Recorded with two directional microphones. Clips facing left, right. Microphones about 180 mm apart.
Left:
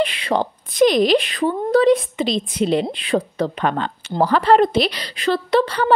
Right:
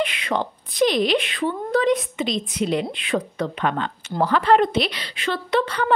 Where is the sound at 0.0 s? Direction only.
35° left (ahead or behind).